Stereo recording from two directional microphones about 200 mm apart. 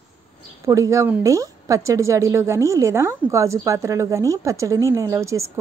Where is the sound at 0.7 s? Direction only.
15° right (ahead or behind).